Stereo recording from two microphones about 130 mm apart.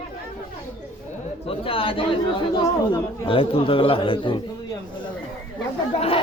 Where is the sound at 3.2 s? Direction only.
45° left (ahead or behind).